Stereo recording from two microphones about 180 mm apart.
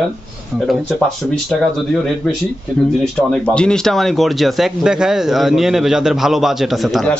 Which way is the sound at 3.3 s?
5° left (ahead or behind).